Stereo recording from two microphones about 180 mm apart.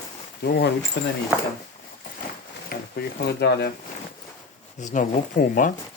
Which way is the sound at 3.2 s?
65° left (ahead or behind).